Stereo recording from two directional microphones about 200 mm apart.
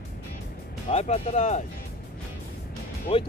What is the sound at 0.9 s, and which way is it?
Speech, 35° left (ahead or behind).